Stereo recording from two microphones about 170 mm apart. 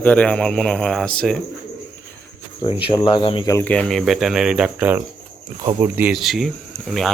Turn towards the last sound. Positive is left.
turn(degrees=0)  # may be behind; listen again after turning